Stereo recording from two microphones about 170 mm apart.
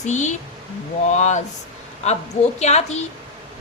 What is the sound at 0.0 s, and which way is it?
A woman's voice, 45° left (ahead or behind).